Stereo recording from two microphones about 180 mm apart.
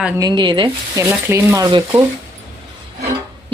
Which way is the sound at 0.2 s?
25° right (ahead or behind).